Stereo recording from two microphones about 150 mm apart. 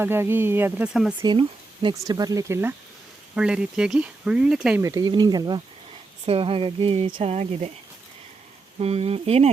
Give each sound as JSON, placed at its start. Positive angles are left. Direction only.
{"t": 0.0, "sound": "speech", "side_deg": -15}
{"t": 1.2, "sound": "speech", "side_deg": -30}
{"t": 3.3, "sound": "speech", "side_deg": -5}
{"t": 4.8, "sound": "speech", "side_deg": -25}
{"t": 6.2, "sound": "speech", "side_deg": -40}
{"t": 8.8, "sound": "speech", "side_deg": -40}